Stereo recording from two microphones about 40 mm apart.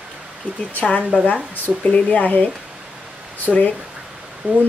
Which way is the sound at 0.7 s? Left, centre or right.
Left.